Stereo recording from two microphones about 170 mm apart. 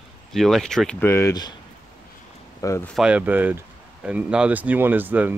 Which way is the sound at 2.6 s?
20° left (ahead or behind).